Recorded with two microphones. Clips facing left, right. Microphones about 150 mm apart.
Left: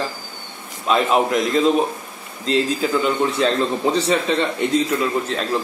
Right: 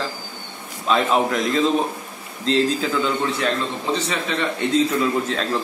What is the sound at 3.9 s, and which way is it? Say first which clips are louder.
Speech: left 5 dB; 35° left (ahead or behind).